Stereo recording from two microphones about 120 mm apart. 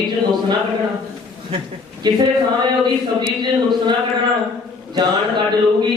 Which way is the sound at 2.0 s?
35° right (ahead or behind).